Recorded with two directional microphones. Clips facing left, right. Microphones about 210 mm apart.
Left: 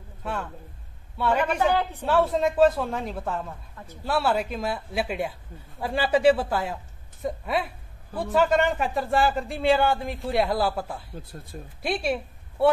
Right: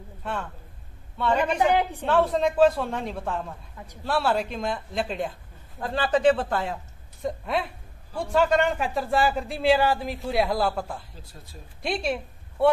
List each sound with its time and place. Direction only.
0.2 s a man's voice: 5° left (ahead or behind)
1.6 s a woman's voice: 15° right (ahead or behind)
2.0 s speech: 5° left (ahead or behind)
3.7 s speech: 15° right (ahead or behind)
4.0 s a man's voice: 5° left (ahead or behind)